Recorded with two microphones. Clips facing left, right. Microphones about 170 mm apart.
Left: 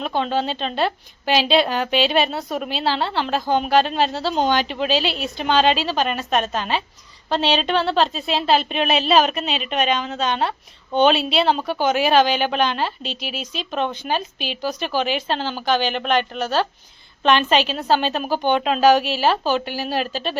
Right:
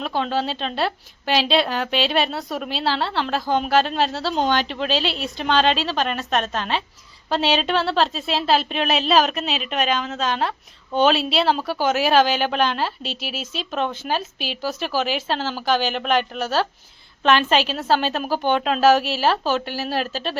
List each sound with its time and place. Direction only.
0.0 s a woman's voice: centre (ahead or behind)